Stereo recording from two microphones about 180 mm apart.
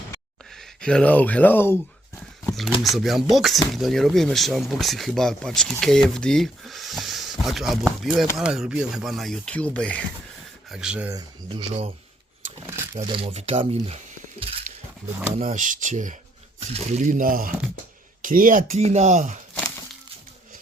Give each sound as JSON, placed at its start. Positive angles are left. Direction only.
{"t": 0.5, "sound": "speech", "side_deg": 5}
{"t": 2.8, "sound": "speech", "side_deg": 0}
{"t": 10.7, "sound": "speech", "side_deg": -5}
{"t": 11.1, "sound": "speech", "side_deg": -25}
{"t": 12.5, "sound": "speech", "side_deg": -15}
{"t": 13.1, "sound": "speech", "side_deg": -30}
{"t": 14.7, "sound": "a sound", "side_deg": -45}
{"t": 15.4, "sound": "speech", "side_deg": -45}